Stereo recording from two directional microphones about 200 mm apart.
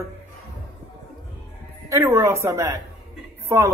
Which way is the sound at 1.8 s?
15° right (ahead or behind).